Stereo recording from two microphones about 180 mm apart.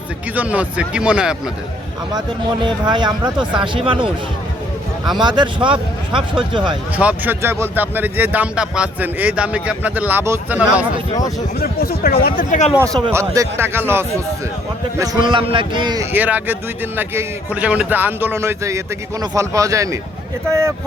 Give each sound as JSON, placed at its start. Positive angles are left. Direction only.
{"t": 0.3, "sound": "speech", "side_deg": -10}
{"t": 2.6, "sound": "speech", "side_deg": -25}
{"t": 5.2, "sound": "speech", "side_deg": -25}
{"t": 6.9, "sound": "speech", "side_deg": -10}
{"t": 11.6, "sound": "speech", "side_deg": 55}
{"t": 12.7, "sound": "speech", "side_deg": -20}
{"t": 16.1, "sound": "speech", "side_deg": -10}